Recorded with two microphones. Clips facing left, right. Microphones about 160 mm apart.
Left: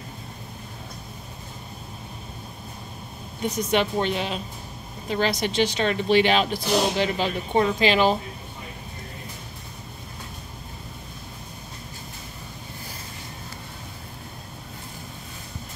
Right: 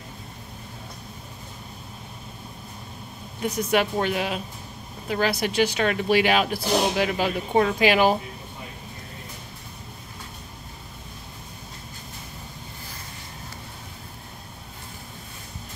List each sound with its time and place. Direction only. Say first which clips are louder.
3.4 s speech: even; 10° right (ahead or behind)